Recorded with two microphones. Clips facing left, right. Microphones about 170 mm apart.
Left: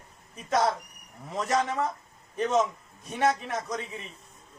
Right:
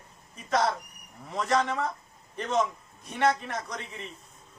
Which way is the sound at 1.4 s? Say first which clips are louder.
Even; 20° left (ahead or behind).